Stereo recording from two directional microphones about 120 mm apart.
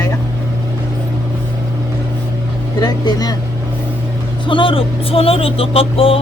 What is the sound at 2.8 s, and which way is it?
Speech, 35° left (ahead or behind).